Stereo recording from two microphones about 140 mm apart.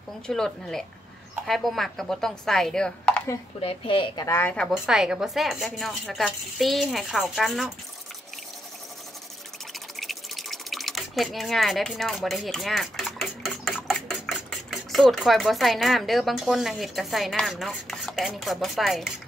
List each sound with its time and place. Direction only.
0.3 s speech: 5° left (ahead or behind)
3.6 s a woman's voice: 40° left (ahead or behind)
4.4 s a woman's voice: 10° left (ahead or behind)
4.6 s speech: 5° right (ahead or behind)
9.9 s speech: centre (ahead or behind)